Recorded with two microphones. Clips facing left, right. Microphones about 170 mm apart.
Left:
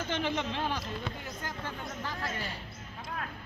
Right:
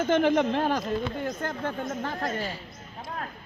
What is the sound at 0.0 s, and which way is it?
Speech, 50° right (ahead or behind).